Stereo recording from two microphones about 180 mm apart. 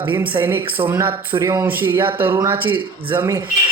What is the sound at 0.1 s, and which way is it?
Speech, 10° right (ahead or behind).